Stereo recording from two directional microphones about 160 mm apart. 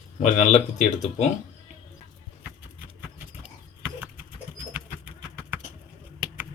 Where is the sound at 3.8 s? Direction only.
10° right (ahead or behind).